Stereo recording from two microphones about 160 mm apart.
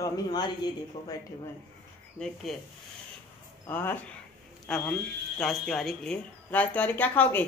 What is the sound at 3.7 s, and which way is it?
A woman's voice, 10° left (ahead or behind).